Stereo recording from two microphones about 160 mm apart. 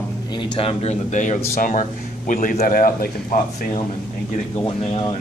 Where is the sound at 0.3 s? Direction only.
30° left (ahead or behind); by 3.8 s 55° left (ahead or behind).